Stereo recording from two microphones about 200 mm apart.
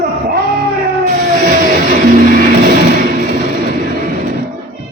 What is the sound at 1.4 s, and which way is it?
Music, 40° right (ahead or behind).